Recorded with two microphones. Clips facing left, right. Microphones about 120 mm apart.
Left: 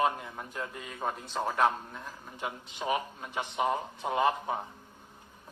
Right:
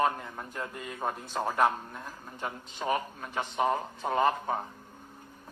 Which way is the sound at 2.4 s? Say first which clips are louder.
Even; 10° left (ahead or behind).